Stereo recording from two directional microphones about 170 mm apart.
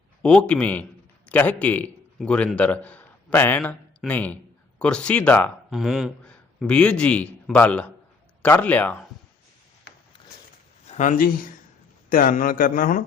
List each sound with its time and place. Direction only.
0.2 s a man's voice: 5° left (ahead or behind)
5.7 s a man's voice: centre (ahead or behind)
10.8 s a man's voice: 45° left (ahead or behind)